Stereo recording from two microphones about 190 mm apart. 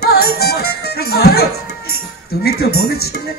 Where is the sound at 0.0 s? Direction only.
55° left (ahead or behind).